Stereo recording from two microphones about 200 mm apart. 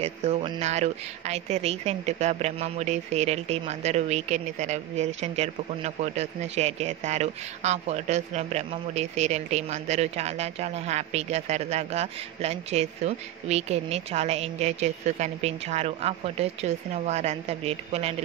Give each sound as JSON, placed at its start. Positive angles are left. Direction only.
{"t": 0.0, "sound": "speech", "side_deg": -30}